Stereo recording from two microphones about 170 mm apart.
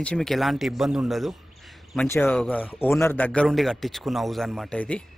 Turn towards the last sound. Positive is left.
turn(degrees=5)  # may be behind; listen again after turning